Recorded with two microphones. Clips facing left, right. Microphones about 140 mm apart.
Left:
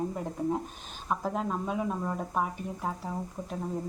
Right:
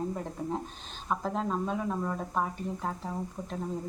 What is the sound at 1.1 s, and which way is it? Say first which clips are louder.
Speech: even; 5° left (ahead or behind).